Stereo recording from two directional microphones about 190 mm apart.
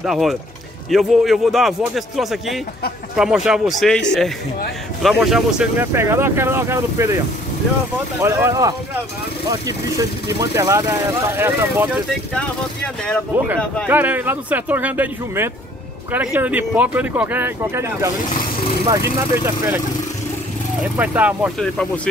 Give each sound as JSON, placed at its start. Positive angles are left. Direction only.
{"t": 0.0, "sound": "a man's voice", "side_deg": 0}
{"t": 8.2, "sound": "speech", "side_deg": -15}
{"t": 13.8, "sound": "speech", "side_deg": -10}
{"t": 20.8, "sound": "speech", "side_deg": -10}
{"t": 21.5, "sound": "a man's voice", "side_deg": 5}